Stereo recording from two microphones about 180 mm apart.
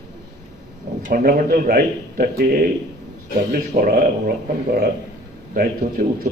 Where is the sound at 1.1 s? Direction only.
50° right (ahead or behind).